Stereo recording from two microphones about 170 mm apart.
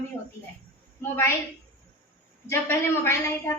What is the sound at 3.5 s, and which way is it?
Speech, 15° left (ahead or behind).